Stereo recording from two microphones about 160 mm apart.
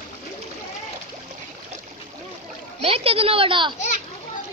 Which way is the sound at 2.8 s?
35° right (ahead or behind).